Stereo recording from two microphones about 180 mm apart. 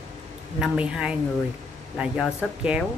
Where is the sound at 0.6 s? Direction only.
5° right (ahead or behind).